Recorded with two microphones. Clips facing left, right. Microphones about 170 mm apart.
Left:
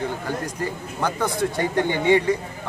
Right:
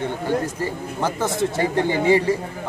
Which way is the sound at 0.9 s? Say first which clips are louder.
Right 1 dB; centre (ahead or behind).